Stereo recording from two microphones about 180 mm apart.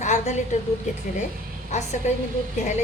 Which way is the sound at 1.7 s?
40° left (ahead or behind).